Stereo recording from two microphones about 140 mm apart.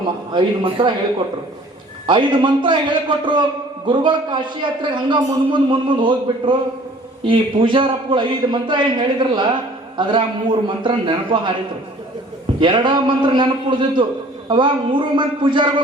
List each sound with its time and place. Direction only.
0.3 s a man's voice: 35° right (ahead or behind)
2.0 s a man's voice: 35° right (ahead or behind)
12.5 s a man's voice: 35° right (ahead or behind)